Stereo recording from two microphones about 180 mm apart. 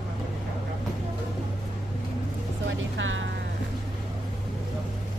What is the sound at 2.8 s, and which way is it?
Music, 90° right.